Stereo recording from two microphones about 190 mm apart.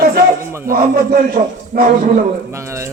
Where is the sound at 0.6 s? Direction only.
50° right (ahead or behind).